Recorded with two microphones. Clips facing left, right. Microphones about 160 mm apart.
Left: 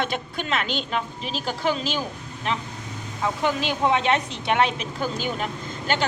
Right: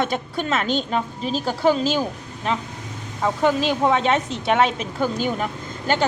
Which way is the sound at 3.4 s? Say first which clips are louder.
Right 4 dB; 40° right (ahead or behind).